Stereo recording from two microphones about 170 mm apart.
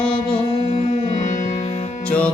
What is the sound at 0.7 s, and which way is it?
Music, 45° left (ahead or behind).